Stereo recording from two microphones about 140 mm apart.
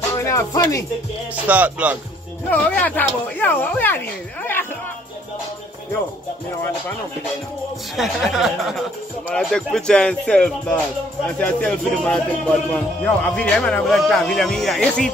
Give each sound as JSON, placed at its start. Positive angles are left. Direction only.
{"t": 0.2, "sound": "speech", "side_deg": 20}
{"t": 1.3, "sound": "music", "side_deg": -10}
{"t": 2.5, "sound": "speech", "side_deg": 10}
{"t": 7.9, "sound": "speech", "side_deg": 0}